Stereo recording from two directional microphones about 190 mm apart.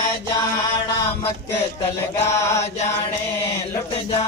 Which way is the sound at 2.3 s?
15° left (ahead or behind).